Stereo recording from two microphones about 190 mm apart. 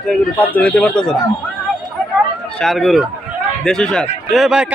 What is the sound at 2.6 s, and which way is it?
A man's voice, centre (ahead or behind).